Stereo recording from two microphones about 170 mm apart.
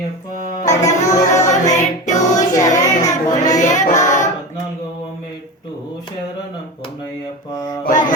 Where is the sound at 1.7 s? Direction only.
45° left (ahead or behind).